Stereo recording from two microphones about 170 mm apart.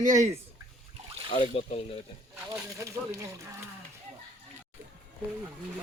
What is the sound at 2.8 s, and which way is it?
Speech, 20° right (ahead or behind).